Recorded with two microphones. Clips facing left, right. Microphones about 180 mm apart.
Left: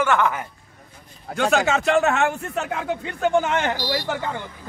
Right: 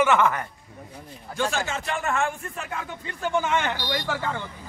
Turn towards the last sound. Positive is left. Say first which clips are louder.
# left 2 dB
turn(degrees=15)  # may be behind; listen again after turning